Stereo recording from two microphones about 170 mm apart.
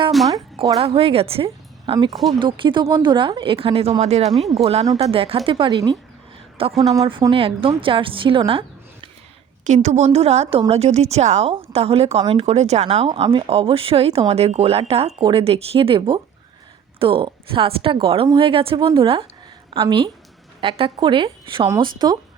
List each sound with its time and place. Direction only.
0.3 s speech: 20° right (ahead or behind)
0.8 s speech: 35° right (ahead or behind)
9.6 s speech: 45° right (ahead or behind); by 22.2 s 25° right (ahead or behind)